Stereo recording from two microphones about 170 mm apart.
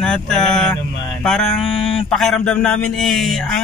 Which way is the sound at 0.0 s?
5° left (ahead or behind).